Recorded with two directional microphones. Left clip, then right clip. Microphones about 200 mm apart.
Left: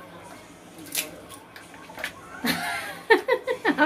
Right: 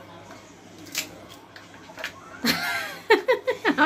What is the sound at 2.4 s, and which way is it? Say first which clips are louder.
Laughter: right 2 dB; 20° right (ahead or behind).